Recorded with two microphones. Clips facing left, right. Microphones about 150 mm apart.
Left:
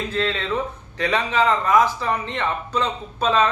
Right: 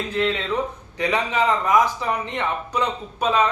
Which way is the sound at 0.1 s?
15° right (ahead or behind).